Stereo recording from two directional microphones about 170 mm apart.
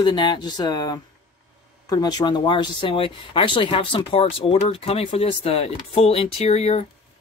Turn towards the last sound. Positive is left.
turn(degrees=40)  # may be behind; listen again after turning